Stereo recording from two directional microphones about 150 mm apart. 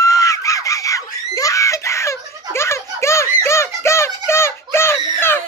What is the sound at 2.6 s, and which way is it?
Music, 20° left (ahead or behind).